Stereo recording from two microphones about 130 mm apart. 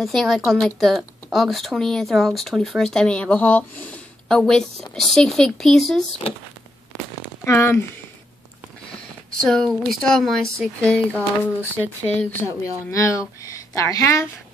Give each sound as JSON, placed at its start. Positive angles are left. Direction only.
{"t": 0.0, "sound": "a woman's voice", "side_deg": 0}
{"t": 7.4, "sound": "speech", "side_deg": 20}
{"t": 9.4, "sound": "a woman's voice", "side_deg": 5}
{"t": 12.9, "sound": "speech", "side_deg": 25}